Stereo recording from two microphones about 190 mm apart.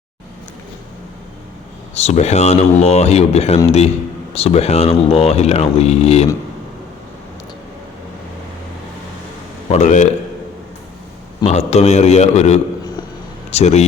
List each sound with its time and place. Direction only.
2.0 s speech: 35° left (ahead or behind)
9.7 s speech: 40° left (ahead or behind)
11.4 s speech: 35° left (ahead or behind)